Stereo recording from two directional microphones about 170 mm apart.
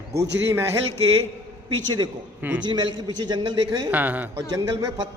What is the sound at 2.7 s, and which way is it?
A man's voice, 25° right (ahead or behind).